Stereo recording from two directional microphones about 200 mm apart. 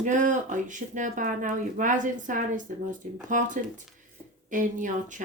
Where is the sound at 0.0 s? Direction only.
40° right (ahead or behind).